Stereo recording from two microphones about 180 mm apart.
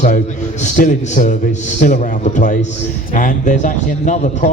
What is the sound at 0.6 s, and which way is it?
A man's voice, 45° left (ahead or behind).